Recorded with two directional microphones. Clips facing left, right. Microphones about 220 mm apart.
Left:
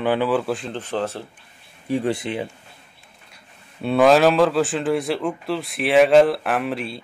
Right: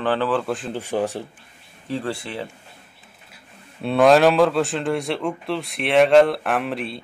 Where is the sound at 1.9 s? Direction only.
15° left (ahead or behind).